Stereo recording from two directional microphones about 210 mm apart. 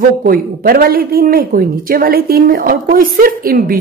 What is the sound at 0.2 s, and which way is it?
Speech, 45° right (ahead or behind).